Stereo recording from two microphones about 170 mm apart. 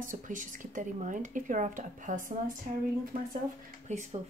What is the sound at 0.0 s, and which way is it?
Speech, 50° right (ahead or behind).